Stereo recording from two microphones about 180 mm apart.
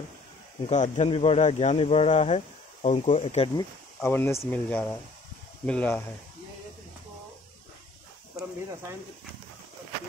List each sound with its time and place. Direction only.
0.7 s speech: 40° left (ahead or behind)
3.5 s speech: 15° left (ahead or behind)